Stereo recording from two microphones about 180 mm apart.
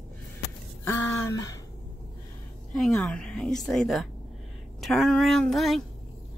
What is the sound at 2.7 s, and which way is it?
A woman's voice, centre (ahead or behind).